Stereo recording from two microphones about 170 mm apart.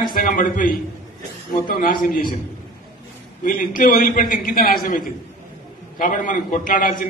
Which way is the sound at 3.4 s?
55° left (ahead or behind).